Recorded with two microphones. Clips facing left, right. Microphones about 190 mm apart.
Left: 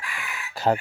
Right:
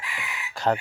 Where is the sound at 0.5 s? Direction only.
5° left (ahead or behind).